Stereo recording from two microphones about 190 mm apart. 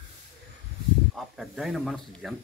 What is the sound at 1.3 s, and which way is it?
A man's voice, centre (ahead or behind).